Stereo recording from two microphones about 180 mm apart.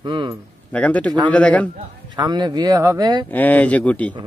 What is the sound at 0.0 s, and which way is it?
Speech, 25° right (ahead or behind).